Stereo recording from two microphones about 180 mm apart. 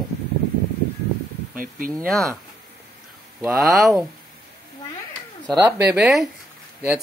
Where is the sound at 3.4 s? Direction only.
Centre (ahead or behind).